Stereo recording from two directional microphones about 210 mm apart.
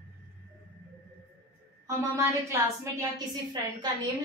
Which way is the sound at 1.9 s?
15° right (ahead or behind).